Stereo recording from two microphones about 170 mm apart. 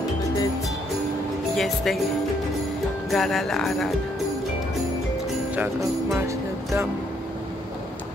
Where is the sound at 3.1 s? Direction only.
Centre (ahead or behind).